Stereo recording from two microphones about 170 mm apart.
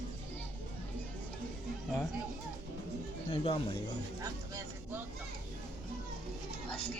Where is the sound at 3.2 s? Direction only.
35° left (ahead or behind).